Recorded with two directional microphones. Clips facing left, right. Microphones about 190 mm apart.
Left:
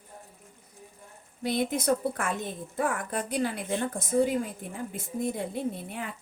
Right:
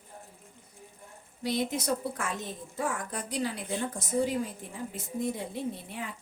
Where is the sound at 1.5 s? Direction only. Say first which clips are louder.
Left 3 dB; 55° left (ahead or behind).